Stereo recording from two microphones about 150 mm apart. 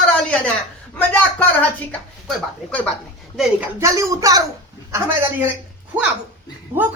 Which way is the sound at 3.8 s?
20° right (ahead or behind).